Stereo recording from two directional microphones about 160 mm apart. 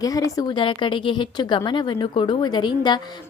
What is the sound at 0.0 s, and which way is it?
A woman's voice, 20° left (ahead or behind).